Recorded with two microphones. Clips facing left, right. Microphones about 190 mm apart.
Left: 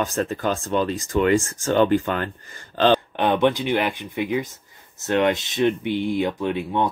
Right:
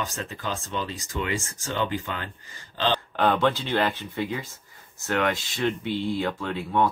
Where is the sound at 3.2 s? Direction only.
20° left (ahead or behind).